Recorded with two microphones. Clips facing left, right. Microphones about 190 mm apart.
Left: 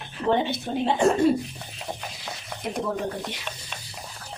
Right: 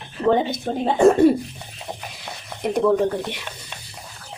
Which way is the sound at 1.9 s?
15° right (ahead or behind).